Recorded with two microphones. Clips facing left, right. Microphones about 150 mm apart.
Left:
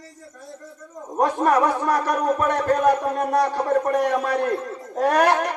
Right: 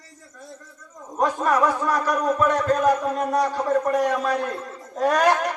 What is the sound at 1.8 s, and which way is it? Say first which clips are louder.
Music: left 1 dB; 55° left (ahead or behind).